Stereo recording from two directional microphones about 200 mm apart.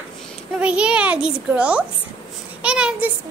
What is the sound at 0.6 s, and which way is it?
A child's voice, 5° right (ahead or behind).